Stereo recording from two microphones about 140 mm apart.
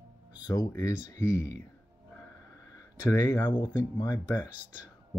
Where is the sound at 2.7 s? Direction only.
25° left (ahead or behind).